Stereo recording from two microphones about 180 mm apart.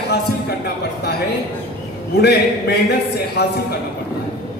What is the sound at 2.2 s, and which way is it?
Speech, 65° left (ahead or behind).